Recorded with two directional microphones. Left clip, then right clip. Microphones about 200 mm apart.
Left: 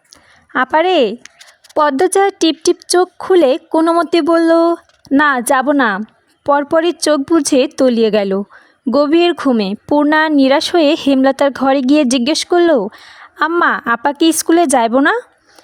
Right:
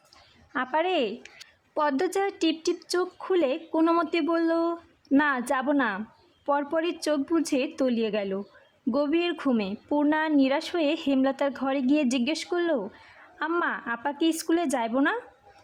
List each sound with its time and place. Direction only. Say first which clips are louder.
0.5 s speech: left 14 dB; 45° left (ahead or behind)